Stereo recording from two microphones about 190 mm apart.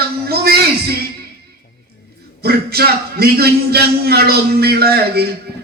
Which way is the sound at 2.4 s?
55° right (ahead or behind).